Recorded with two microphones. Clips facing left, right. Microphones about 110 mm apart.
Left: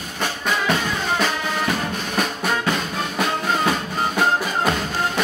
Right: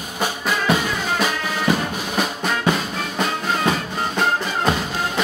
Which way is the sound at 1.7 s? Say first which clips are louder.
Right 7 dB; 10° right (ahead or behind).